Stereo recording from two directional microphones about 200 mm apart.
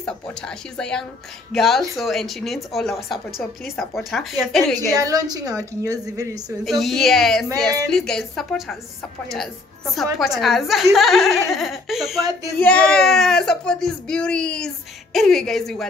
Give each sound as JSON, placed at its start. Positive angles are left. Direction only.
{"t": 0.0, "sound": "speech", "side_deg": 5}
{"t": 4.9, "sound": "a woman's voice", "side_deg": -20}
{"t": 6.6, "sound": "speech", "side_deg": 0}
{"t": 7.4, "sound": "a woman's voice", "side_deg": -15}
{"t": 7.9, "sound": "speech", "side_deg": 0}
{"t": 10.1, "sound": "speech", "side_deg": 0}